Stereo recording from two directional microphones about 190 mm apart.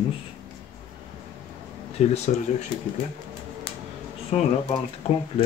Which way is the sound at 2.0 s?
35° left (ahead or behind).